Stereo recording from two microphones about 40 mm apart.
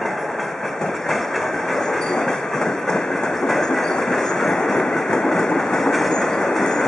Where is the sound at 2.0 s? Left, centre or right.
Centre.